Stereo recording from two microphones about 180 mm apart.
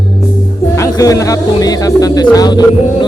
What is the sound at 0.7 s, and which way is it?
Speech, 20° left (ahead or behind).